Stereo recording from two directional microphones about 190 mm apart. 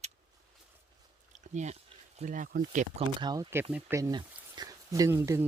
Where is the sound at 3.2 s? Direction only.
20° right (ahead or behind).